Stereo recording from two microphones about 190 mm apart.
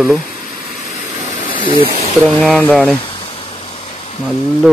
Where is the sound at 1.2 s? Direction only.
25° right (ahead or behind).